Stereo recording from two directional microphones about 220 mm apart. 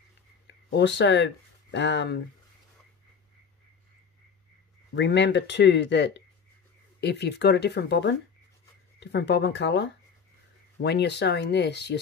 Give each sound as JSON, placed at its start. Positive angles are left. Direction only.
{"t": 0.5, "sound": "speech", "side_deg": 50}
{"t": 4.9, "sound": "speech", "side_deg": 55}